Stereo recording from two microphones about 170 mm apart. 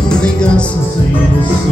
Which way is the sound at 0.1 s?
5° left (ahead or behind).